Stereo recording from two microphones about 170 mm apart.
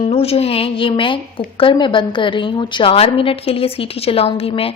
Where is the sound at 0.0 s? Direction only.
35° left (ahead or behind).